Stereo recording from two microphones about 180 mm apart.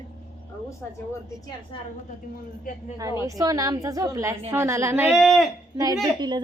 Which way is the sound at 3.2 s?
20° right (ahead or behind).